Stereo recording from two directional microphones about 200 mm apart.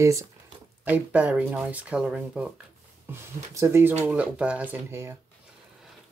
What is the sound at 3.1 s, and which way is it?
Speech, 15° right (ahead or behind).